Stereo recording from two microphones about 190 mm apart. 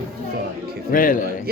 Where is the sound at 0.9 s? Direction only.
45° left (ahead or behind).